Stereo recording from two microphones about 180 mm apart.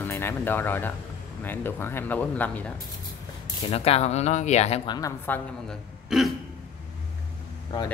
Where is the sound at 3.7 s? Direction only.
35° left (ahead or behind).